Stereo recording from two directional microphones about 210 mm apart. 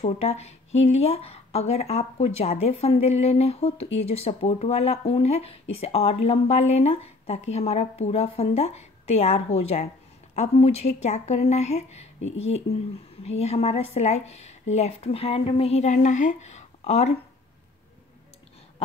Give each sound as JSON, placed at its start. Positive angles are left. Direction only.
{"t": 0.0, "sound": "speech", "side_deg": 30}